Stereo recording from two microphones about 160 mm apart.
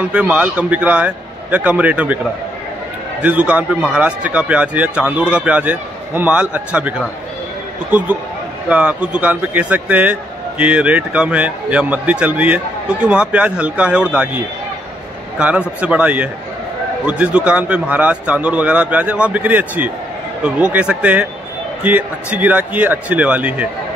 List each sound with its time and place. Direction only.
0.1 s a man's voice: 10° right (ahead or behind)
3.2 s a man's voice: 10° right (ahead or behind)
8.6 s a man's voice: 10° right (ahead or behind)